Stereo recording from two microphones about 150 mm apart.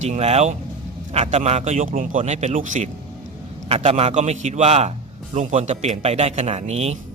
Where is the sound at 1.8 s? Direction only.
65° right (ahead or behind); by 6.9 s 45° right (ahead or behind).